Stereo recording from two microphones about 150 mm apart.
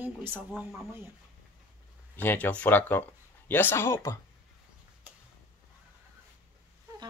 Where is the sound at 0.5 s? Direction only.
10° right (ahead or behind).